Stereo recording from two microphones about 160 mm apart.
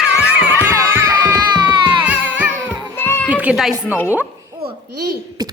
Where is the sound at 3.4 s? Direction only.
5° right (ahead or behind).